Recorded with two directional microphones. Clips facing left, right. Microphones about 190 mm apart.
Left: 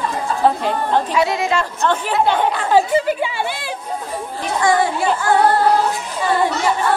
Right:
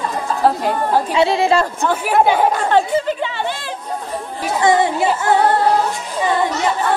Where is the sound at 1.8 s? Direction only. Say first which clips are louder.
Right 2 dB; 10° right (ahead or behind).